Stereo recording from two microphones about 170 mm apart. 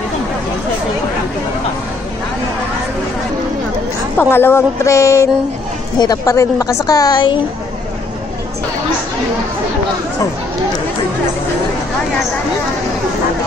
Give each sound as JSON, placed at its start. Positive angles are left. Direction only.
{"t": 4.2, "sound": "a woman's voice", "side_deg": 15}